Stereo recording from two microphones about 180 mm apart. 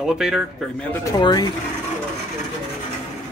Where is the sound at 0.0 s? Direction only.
5° right (ahead or behind).